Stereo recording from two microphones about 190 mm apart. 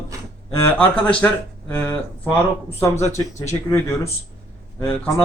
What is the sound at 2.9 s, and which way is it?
Speech, 35° left (ahead or behind).